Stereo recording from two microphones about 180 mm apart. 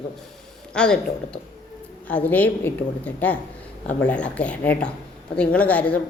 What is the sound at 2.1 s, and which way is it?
A woman's voice, 10° left (ahead or behind).